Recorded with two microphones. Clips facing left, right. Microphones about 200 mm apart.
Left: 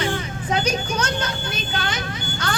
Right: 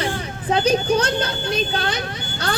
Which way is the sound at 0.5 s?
30° right (ahead or behind).